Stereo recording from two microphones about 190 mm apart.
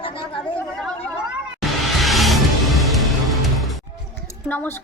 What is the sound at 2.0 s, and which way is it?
Music, centre (ahead or behind).